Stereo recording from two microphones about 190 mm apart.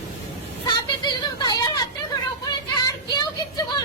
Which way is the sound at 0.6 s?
20° left (ahead or behind).